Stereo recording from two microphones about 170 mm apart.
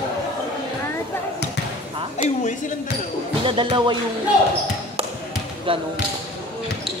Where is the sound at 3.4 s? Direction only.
30° right (ahead or behind).